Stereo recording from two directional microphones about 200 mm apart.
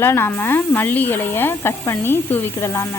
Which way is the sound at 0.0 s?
10° left (ahead or behind).